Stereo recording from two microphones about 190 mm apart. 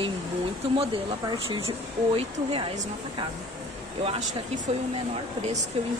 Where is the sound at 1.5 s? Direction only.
25° right (ahead or behind).